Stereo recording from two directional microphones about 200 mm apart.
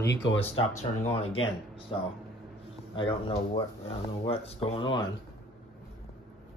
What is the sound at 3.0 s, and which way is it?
Speech, 25° left (ahead or behind).